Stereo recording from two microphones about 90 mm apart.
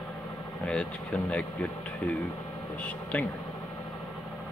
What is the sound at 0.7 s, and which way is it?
Speech, 10° left (ahead or behind).